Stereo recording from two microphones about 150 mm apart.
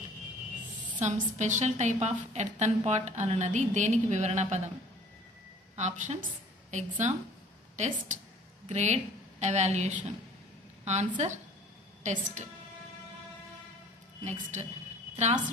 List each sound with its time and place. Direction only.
0.9 s a woman's voice: 50° right (ahead or behind)
5.8 s a woman's voice: 50° right (ahead or behind)
14.2 s a woman's voice: 50° right (ahead or behind)